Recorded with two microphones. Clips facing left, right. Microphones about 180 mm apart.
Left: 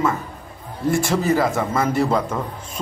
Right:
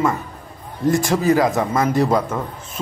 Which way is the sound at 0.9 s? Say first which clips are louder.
Right 2 dB; 15° right (ahead or behind).